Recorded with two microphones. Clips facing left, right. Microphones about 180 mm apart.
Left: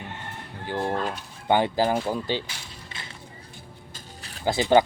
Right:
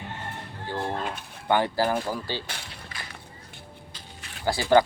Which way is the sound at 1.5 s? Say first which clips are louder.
Left 2 dB; 20° left (ahead or behind).